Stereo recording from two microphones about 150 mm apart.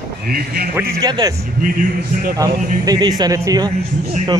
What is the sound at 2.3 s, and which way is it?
A man's voice, 25° right (ahead or behind).